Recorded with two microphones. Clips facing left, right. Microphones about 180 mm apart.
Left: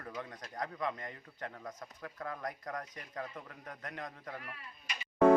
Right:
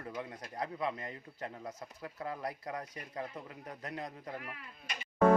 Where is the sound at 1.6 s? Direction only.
10° right (ahead or behind).